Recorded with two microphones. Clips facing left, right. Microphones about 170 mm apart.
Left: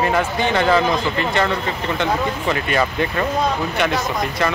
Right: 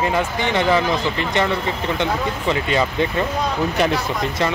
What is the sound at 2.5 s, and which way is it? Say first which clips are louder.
Speech: right 1 dB; 20° right (ahead or behind).